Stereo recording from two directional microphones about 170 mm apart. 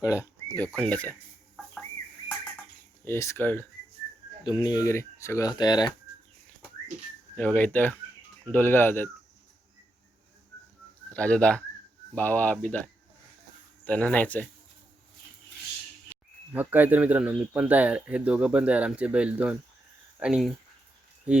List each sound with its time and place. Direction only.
0.0 s speech: 20° left (ahead or behind)
0.8 s speech: 5° left (ahead or behind)
3.0 s speech: 15° left (ahead or behind)
4.4 s speech: 25° left (ahead or behind)
7.3 s speech: 10° left (ahead or behind)
11.1 s speech: 5° left (ahead or behind)
16.5 s speech: 10° right (ahead or behind)